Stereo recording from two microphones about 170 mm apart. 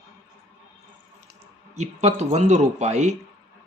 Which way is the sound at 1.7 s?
40° right (ahead or behind).